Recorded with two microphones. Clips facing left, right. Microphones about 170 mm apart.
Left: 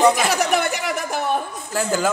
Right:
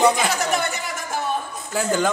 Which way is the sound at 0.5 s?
65° left (ahead or behind).